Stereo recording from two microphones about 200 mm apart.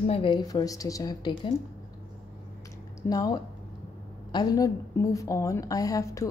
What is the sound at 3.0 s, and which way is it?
A woman's voice, 20° left (ahead or behind).